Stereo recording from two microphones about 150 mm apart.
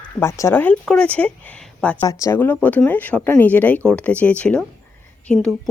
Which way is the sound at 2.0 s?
20° left (ahead or behind).